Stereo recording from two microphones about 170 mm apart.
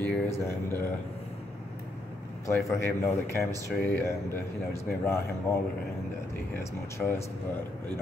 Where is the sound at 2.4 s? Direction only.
15° left (ahead or behind).